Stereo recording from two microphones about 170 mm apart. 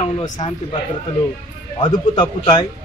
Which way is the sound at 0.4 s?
40° left (ahead or behind).